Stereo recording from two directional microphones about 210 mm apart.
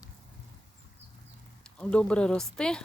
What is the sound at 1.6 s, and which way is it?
Speech, 5° left (ahead or behind).